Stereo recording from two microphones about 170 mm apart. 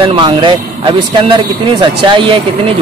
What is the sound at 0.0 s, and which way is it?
Speech, 30° right (ahead or behind).